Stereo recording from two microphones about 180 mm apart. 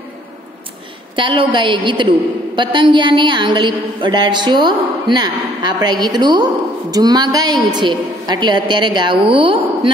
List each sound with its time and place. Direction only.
1.1 s a woman's voice: 30° right (ahead or behind)